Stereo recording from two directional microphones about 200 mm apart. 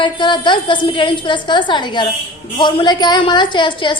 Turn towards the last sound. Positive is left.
turn(degrees=25)  # may be behind; listen again after turning